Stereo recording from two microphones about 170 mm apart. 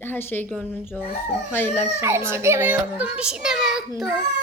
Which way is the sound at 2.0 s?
15° right (ahead or behind).